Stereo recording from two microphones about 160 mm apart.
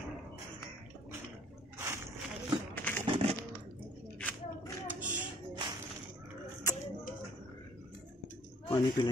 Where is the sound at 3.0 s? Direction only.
35° right (ahead or behind).